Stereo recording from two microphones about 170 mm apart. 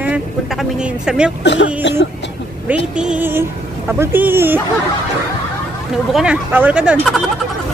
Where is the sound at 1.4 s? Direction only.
90° left.